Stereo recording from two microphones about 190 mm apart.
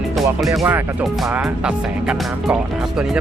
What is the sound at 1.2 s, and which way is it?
Speech, 5° right (ahead or behind).